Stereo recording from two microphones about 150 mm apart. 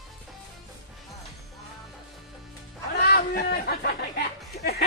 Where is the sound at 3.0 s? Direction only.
85° left.